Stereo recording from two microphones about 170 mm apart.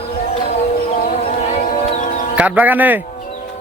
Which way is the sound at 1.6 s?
50° left (ahead or behind).